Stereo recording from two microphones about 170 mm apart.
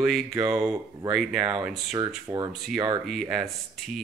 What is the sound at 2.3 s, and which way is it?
Speech, 15° right (ahead or behind).